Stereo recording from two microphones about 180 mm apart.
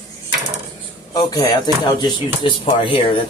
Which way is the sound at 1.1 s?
20° left (ahead or behind).